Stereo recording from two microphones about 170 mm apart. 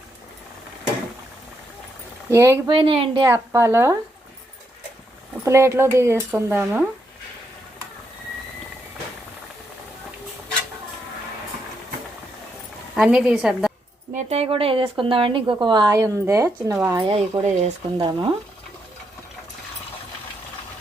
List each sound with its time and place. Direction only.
2.3 s speech: 15° right (ahead or behind)
2.6 s a woman's voice: 30° right (ahead or behind)
3.2 s speech: 15° right (ahead or behind)
5.5 s speech: 15° right (ahead or behind)
12.9 s a woman's voice: 5° right (ahead or behind)
14.2 s a woman's voice: 40° right (ahead or behind); by 17.0 s 15° right (ahead or behind)
17.0 s speech: 30° right (ahead or behind)
17.9 s a woman's voice: 25° right (ahead or behind)